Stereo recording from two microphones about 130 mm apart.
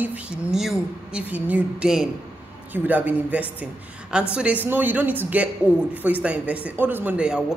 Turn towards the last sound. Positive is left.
turn(degrees=-10)  # may be behind; listen again after turning